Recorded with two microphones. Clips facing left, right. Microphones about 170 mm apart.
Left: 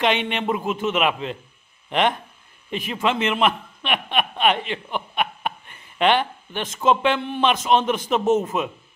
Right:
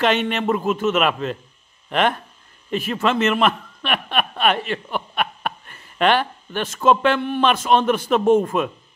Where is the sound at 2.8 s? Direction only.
10° left (ahead or behind).